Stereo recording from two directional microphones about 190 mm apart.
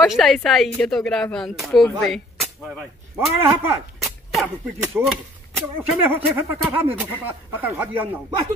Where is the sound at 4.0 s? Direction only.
Centre (ahead or behind).